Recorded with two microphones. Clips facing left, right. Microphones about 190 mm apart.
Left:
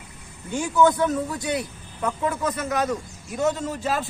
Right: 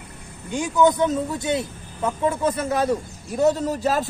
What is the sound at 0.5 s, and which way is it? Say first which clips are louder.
A man's voice: right 1 dB; 15° right (ahead or behind).